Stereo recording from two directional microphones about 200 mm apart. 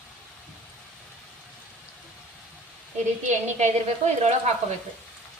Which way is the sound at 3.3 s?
35° right (ahead or behind).